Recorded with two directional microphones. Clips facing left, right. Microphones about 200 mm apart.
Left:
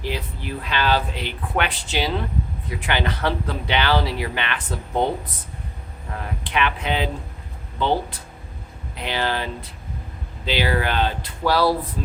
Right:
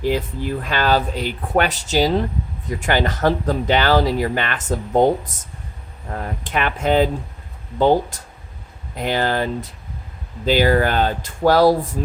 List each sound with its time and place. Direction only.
0.6 s speech: 45° right (ahead or behind)
6.1 s speech: 45° right (ahead or behind)